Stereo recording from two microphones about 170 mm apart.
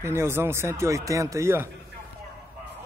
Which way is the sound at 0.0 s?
15° right (ahead or behind).